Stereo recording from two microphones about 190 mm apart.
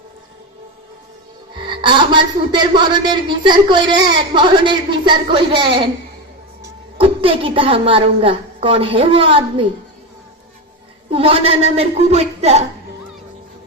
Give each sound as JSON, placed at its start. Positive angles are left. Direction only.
{"t": 1.6, "sound": "speech", "side_deg": -25}
{"t": 7.0, "sound": "speech", "side_deg": -30}
{"t": 11.1, "sound": "a woman's voice", "side_deg": -30}